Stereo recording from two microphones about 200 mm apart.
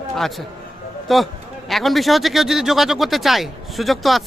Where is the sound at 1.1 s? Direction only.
Centre (ahead or behind).